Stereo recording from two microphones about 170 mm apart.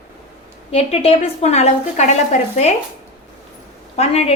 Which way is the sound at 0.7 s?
35° left (ahead or behind).